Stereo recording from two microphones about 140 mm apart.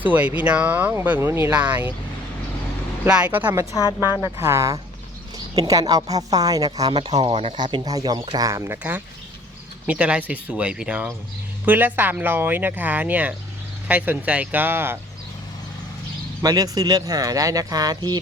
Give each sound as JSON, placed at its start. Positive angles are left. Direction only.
{"t": 0.0, "sound": "speech", "side_deg": -10}
{"t": 3.0, "sound": "speech", "side_deg": -10}
{"t": 3.8, "sound": "speech", "side_deg": 25}
{"t": 4.4, "sound": "speech", "side_deg": -20}
{"t": 16.4, "sound": "speech", "side_deg": -25}